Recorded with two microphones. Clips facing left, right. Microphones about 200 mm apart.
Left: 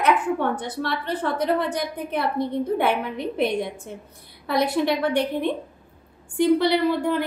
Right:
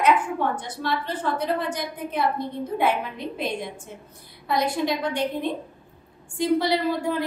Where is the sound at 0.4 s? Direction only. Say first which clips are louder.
Left 2 dB; 60° left (ahead or behind).